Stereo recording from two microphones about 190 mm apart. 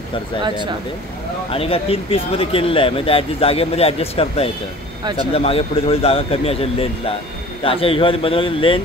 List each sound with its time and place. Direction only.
0.4 s speech: 25° right (ahead or behind)
1.5 s speech: 30° left (ahead or behind)
5.0 s speech: 20° right (ahead or behind)
5.3 s speech: 30° left (ahead or behind)